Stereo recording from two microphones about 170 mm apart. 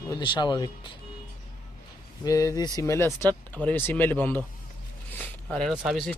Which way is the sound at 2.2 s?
20° left (ahead or behind).